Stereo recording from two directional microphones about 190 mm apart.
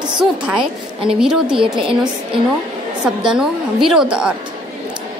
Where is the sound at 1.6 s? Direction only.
25° right (ahead or behind).